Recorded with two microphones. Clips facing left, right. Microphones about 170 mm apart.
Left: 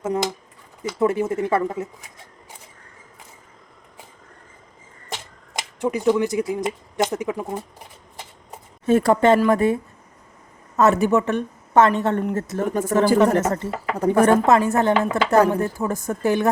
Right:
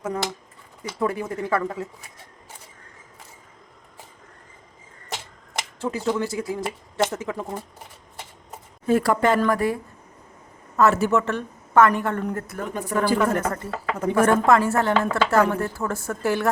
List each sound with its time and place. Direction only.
0.9 s speech: 25° left (ahead or behind)
5.8 s speech: 15° left (ahead or behind)
8.9 s speech: 25° left (ahead or behind)
12.6 s a woman's voice: 45° left (ahead or behind)
13.4 s speech: 25° left (ahead or behind)